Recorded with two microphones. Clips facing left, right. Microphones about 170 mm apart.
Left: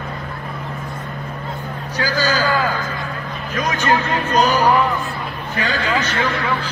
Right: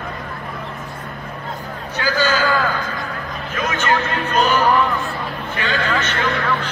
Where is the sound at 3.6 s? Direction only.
40° left (ahead or behind).